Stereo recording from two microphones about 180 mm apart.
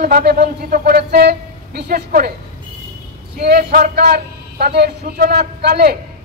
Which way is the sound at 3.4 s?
60° right (ahead or behind).